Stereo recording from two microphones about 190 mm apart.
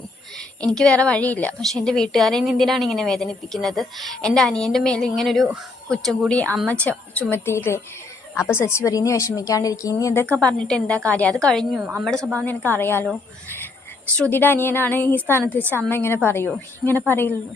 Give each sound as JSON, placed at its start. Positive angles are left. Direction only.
{"t": 0.3, "sound": "a woman's voice", "side_deg": 5}
{"t": 14.2, "sound": "a woman's voice", "side_deg": 10}